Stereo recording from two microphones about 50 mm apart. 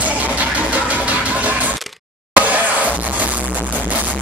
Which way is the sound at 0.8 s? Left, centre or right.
Right.